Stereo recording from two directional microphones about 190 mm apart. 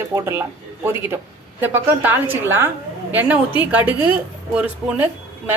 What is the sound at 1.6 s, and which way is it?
A woman's voice, 10° right (ahead or behind).